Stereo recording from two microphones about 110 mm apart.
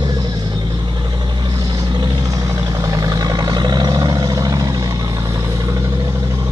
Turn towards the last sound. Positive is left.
turn(degrees=-30)  # may be behind; listen again after turning